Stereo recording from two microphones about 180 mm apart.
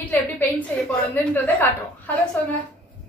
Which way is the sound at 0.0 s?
10° left (ahead or behind).